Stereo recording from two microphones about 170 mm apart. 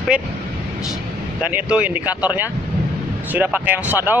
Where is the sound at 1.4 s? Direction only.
10° right (ahead or behind).